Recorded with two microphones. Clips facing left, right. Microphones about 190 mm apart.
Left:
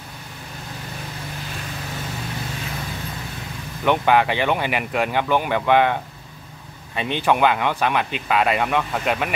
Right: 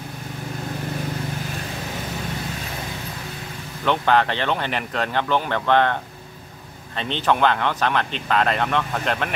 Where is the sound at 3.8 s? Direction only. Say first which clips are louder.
Left 2 dB; 10° left (ahead or behind).